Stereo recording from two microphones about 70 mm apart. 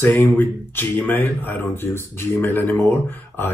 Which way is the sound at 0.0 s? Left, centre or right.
Left.